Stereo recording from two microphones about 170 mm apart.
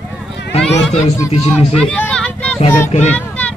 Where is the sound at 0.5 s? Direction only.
40° left (ahead or behind).